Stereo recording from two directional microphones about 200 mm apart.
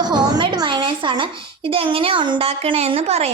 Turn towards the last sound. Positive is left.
turn(degrees=-30)  # may be behind; listen again after turning